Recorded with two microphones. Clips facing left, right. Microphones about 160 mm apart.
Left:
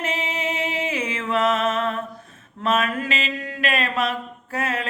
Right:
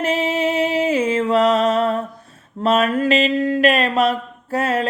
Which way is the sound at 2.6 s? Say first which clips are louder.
Right 6 dB; 35° right (ahead or behind).